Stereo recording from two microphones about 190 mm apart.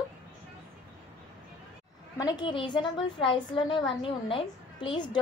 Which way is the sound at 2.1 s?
20° left (ahead or behind).